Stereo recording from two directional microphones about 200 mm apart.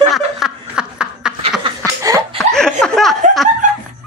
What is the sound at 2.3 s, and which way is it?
Chuckle, 5° left (ahead or behind).